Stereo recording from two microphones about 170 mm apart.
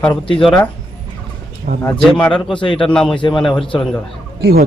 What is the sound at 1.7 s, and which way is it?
Speech, 45° right (ahead or behind).